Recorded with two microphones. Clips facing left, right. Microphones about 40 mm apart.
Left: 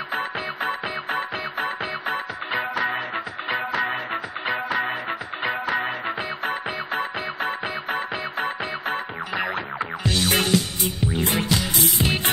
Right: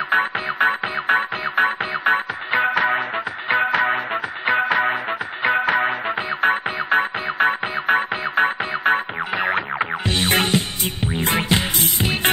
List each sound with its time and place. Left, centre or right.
0.1 s music: right
9.8 s music: right